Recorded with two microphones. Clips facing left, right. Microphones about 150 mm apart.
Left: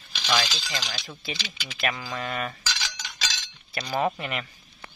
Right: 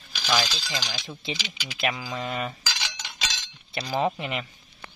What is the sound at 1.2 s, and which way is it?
Speech, 20° right (ahead or behind).